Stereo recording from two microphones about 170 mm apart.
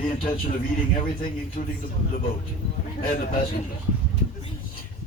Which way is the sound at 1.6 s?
45° left (ahead or behind).